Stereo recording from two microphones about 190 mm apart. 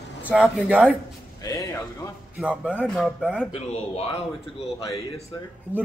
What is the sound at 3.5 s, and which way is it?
Speech, 35° left (ahead or behind).